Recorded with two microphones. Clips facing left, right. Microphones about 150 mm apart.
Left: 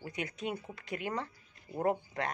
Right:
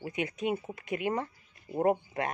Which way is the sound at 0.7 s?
15° right (ahead or behind).